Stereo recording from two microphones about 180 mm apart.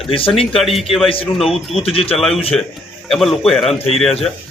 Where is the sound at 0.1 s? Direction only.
30° left (ahead or behind).